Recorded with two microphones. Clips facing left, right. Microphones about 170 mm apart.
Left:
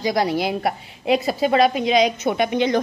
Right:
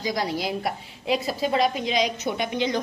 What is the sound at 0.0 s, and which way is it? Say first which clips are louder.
A woman's voice: left 6 dB; 70° left (ahead or behind).